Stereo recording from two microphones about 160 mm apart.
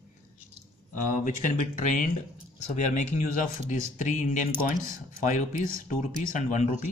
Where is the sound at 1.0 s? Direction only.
50° left (ahead or behind).